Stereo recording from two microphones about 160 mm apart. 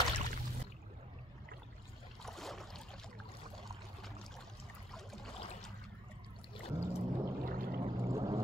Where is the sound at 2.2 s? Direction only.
Centre (ahead or behind).